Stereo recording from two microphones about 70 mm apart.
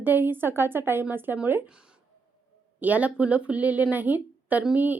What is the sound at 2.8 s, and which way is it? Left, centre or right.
A woman's voice, right.